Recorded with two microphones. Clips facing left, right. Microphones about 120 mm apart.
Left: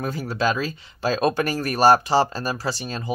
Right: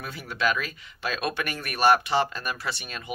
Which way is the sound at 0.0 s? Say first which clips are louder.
Left 5 dB; 40° left (ahead or behind).